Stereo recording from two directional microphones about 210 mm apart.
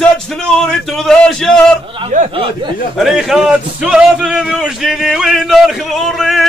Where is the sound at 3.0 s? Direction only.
Centre (ahead or behind).